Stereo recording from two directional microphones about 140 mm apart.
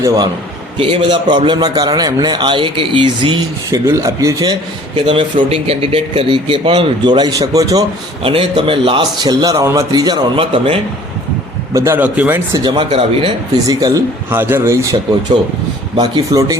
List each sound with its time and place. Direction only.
0.0 s a man's voice: 25° right (ahead or behind)
0.8 s speech: 40° right (ahead or behind)
3.8 s a man's voice: 25° right (ahead or behind)
4.9 s speech: 40° right (ahead or behind)
8.2 s speech: 40° right (ahead or behind)
11.7 s speech: 20° right (ahead or behind)
12.5 s speech: 35° right (ahead or behind)
12.9 s a man's voice: 45° right (ahead or behind)
13.7 s a man's voice: 25° right (ahead or behind)
16.0 s a man's voice: 30° right (ahead or behind)